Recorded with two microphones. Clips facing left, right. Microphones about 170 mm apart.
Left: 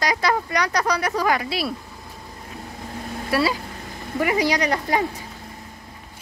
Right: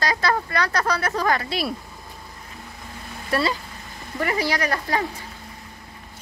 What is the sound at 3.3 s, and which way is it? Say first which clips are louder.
Speech: left 1 dB; 5° left (ahead or behind).